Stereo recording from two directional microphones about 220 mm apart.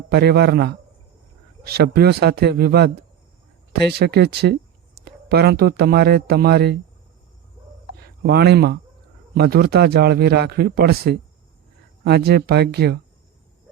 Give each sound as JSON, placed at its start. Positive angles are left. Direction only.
{"t": 0.1, "sound": "a man's voice", "side_deg": -45}
{"t": 7.9, "sound": "a man's voice", "side_deg": -45}